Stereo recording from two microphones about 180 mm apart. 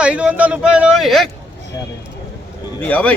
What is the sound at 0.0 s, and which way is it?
Speech, 5° right (ahead or behind).